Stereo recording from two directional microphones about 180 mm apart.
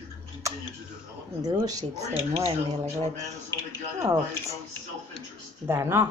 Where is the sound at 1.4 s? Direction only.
20° right (ahead or behind).